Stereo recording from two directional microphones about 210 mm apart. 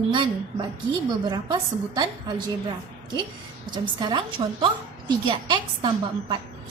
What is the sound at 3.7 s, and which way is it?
A woman's voice, 20° right (ahead or behind).